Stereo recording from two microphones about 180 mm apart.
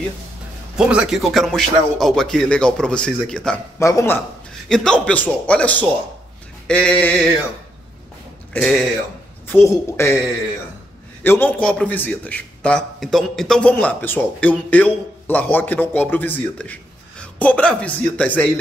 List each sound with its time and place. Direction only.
0.7 s a man's voice: 5° right (ahead or behind)
3.8 s a man's voice: 15° left (ahead or behind)
4.6 s a man's voice: 5° left (ahead or behind)
8.5 s a man's voice: 5° left (ahead or behind)
11.2 s a man's voice: 10° left (ahead or behind)